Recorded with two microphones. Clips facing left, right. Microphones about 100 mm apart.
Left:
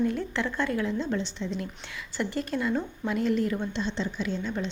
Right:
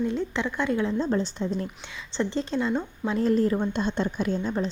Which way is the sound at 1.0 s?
40° right (ahead or behind).